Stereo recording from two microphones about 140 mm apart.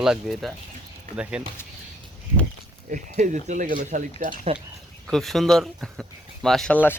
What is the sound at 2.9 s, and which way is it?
Speech, 65° right (ahead or behind).